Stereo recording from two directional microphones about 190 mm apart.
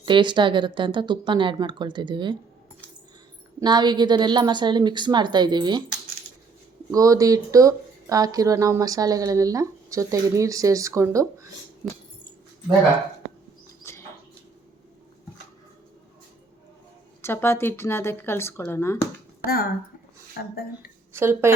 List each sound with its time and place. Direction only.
0.0 s speech: 25° right (ahead or behind)
3.6 s speech: 20° right (ahead or behind)
6.9 s speech: 15° right (ahead or behind)
13.8 s bird: 15° left (ahead or behind)
17.2 s speech: 10° left (ahead or behind)
21.1 s speech: 15° right (ahead or behind)